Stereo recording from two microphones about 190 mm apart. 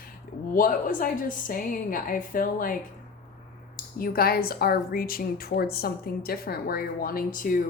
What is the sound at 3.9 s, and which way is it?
A woman's voice, 50° left (ahead or behind).